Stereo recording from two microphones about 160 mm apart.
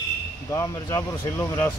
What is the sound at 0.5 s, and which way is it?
Speech, 20° left (ahead or behind).